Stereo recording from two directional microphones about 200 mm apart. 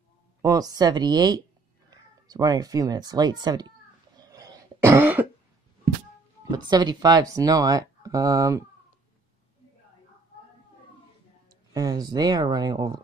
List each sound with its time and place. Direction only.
0.4 s speech: 15° right (ahead or behind)
4.2 s throat clearing: 20° right (ahead or behind)
6.5 s speech: 20° right (ahead or behind)
11.7 s speech: 20° right (ahead or behind)